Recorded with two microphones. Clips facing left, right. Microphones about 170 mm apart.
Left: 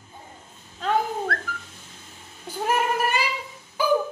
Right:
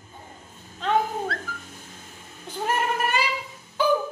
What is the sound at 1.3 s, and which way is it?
Dog, 50° left (ahead or behind).